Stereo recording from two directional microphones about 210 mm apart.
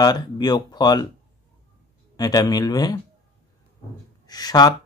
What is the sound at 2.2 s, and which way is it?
Speech, 20° left (ahead or behind).